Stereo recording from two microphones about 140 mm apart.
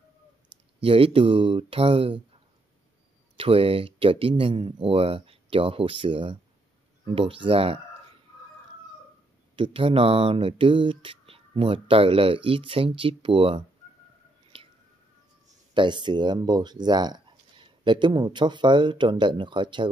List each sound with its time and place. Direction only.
0.7 s speech: 40° right (ahead or behind)
3.3 s speech: 40° right (ahead or behind)
9.6 s speech: 40° right (ahead or behind)
15.7 s speech: 35° right (ahead or behind)